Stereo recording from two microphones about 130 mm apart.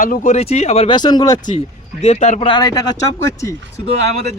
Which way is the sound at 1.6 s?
60° left (ahead or behind).